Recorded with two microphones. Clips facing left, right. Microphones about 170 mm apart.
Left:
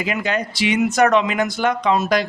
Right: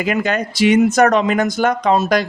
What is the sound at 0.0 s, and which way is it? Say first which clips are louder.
Speech: right 4 dB; 50° right (ahead or behind).